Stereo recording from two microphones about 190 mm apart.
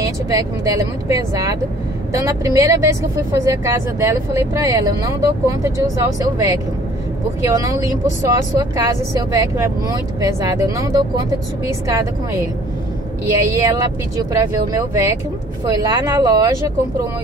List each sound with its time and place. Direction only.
0.0 s speech: 20° right (ahead or behind)